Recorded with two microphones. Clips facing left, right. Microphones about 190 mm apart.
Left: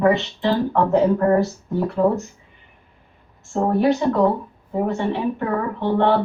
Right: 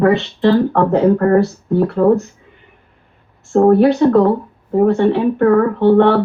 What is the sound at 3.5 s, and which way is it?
Speech, 60° right (ahead or behind).